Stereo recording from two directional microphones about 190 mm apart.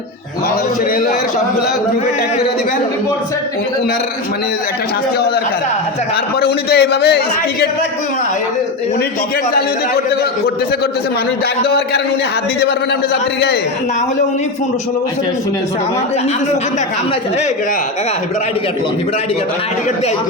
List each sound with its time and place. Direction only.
6.4 s a man's voice: 60° left (ahead or behind)